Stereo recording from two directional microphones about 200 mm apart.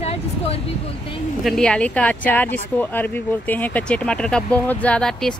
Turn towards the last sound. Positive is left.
turn(degrees=5)  # may be behind; listen again after turning